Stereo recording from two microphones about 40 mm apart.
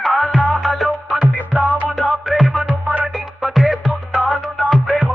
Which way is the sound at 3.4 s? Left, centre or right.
Centre.